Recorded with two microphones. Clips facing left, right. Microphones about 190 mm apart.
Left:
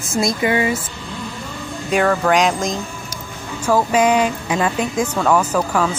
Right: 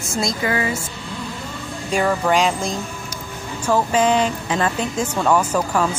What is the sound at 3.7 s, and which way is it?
Speech, 10° left (ahead or behind).